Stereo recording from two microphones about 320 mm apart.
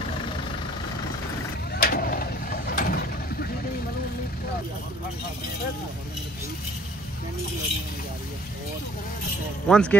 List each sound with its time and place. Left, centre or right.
1.8 s vehicle: left
9.7 s speech: centre